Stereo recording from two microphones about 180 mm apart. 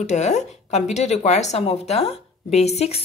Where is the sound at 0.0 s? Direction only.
40° left (ahead or behind).